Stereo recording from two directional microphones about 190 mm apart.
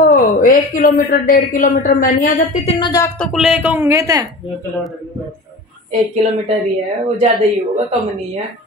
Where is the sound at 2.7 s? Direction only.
25° left (ahead or behind).